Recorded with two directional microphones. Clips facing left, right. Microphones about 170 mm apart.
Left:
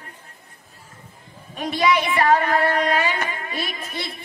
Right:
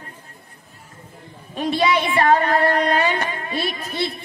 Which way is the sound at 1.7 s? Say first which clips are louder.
Right 1 dB; 30° right (ahead or behind).